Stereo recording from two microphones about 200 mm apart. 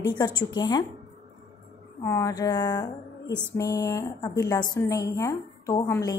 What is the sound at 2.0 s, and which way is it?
A woman's voice, 15° left (ahead or behind).